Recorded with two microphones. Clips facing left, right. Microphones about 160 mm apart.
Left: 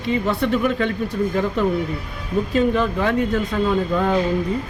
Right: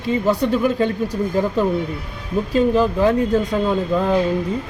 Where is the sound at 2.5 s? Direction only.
35° right (ahead or behind).